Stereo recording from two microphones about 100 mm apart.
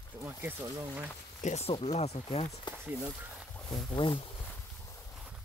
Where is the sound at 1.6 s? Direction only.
85° left.